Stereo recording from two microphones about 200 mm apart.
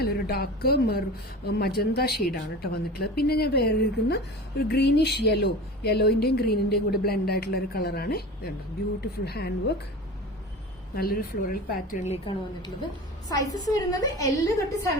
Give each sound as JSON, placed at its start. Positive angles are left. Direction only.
{"t": 0.0, "sound": "a woman's voice", "side_deg": 50}
{"t": 10.9, "sound": "a woman's voice", "side_deg": 50}
{"t": 12.0, "sound": "speech", "side_deg": 30}
{"t": 13.2, "sound": "a woman's voice", "side_deg": 15}